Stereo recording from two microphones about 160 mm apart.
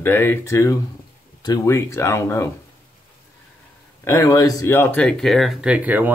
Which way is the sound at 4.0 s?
15° left (ahead or behind).